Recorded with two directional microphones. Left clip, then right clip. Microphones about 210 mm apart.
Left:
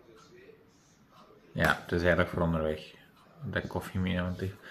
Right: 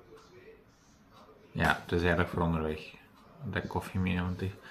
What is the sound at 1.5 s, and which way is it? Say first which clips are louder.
Speech: left 1 dB; 5° right (ahead or behind).